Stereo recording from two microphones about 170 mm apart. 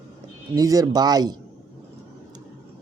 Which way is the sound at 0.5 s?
20° right (ahead or behind).